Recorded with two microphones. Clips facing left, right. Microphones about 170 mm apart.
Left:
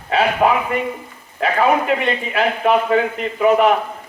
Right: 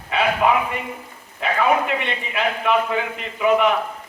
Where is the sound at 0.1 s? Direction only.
35° left (ahead or behind).